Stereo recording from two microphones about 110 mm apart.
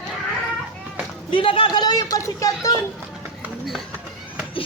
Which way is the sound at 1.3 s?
55° left (ahead or behind).